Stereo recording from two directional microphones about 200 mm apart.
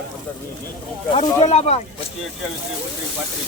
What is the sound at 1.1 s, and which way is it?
Speech, 30° left (ahead or behind).